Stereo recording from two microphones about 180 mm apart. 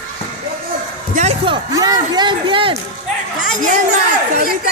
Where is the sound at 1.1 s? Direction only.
35° right (ahead or behind).